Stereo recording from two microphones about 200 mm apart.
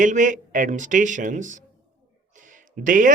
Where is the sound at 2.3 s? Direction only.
40° right (ahead or behind).